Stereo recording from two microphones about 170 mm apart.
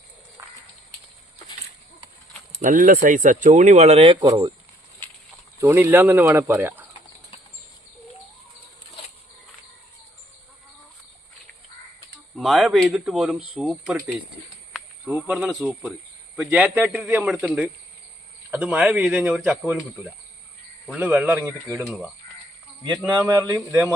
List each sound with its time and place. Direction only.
2.6 s speech: 50° right (ahead or behind); by 4.5 s 25° right (ahead or behind)
5.5 s speech: 15° right (ahead or behind)
12.4 s speech: centre (ahead or behind)
20.9 s speech: 5° right (ahead or behind)
21.8 s speech: centre (ahead or behind)
23.2 s speech: 15° right (ahead or behind)